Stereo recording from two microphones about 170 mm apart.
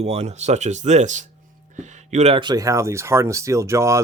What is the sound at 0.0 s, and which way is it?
Speech, 40° right (ahead or behind).